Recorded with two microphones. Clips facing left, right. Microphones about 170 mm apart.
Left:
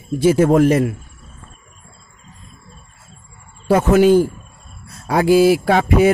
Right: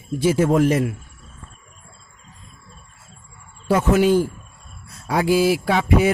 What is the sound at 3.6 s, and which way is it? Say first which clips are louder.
Speech: left 5 dB; 55° left (ahead or behind).